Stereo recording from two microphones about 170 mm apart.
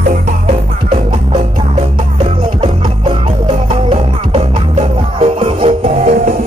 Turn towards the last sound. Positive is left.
turn(degrees=-45)  # may be behind; listen again after turning